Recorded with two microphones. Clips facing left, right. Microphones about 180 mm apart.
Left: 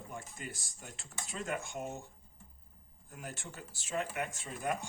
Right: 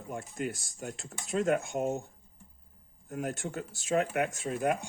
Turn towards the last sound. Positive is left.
turn(degrees=-65)  # may be behind; listen again after turning